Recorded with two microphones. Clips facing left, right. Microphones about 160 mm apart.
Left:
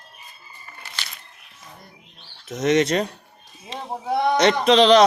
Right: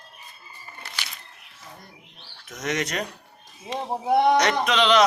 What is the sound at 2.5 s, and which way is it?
Speech, 25° left (ahead or behind).